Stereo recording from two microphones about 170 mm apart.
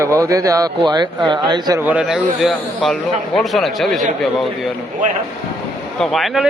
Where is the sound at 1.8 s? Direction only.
5° right (ahead or behind).